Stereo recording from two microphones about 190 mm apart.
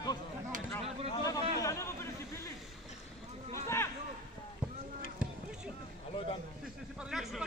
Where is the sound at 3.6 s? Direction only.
15° left (ahead or behind).